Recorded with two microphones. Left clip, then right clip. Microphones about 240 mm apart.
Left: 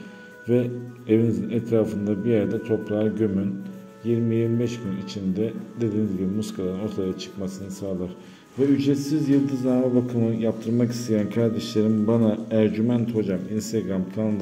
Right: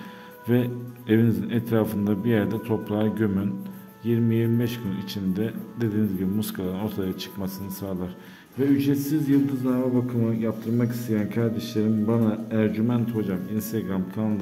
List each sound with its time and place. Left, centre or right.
0.5 s speech: right
8.7 s a man's voice: centre